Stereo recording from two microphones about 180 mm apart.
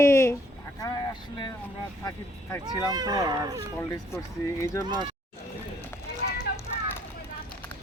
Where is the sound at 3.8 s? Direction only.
15° left (ahead or behind).